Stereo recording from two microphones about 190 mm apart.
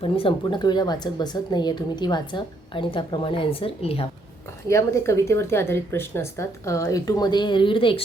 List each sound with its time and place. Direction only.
0.0 s a woman's voice: 25° left (ahead or behind)
4.7 s speech: 15° left (ahead or behind)